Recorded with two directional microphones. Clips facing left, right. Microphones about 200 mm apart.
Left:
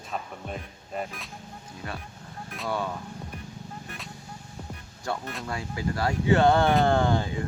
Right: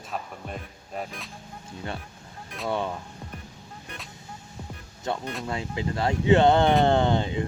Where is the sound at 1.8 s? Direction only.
25° right (ahead or behind).